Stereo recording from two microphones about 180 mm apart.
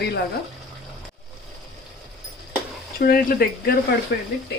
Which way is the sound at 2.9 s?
60° left (ahead or behind).